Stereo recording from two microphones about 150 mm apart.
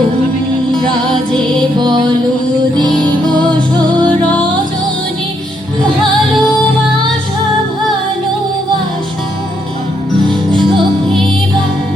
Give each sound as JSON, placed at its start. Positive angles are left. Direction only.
{"t": 0.7, "sound": "music", "side_deg": 5}
{"t": 1.8, "sound": "music", "side_deg": -30}
{"t": 3.3, "sound": "music", "side_deg": -30}
{"t": 4.0, "sound": "music", "side_deg": 10}